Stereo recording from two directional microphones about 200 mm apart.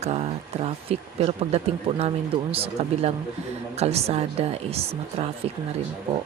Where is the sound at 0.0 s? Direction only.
30° right (ahead or behind).